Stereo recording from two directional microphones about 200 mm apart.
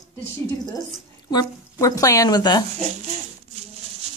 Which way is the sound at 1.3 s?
15° left (ahead or behind).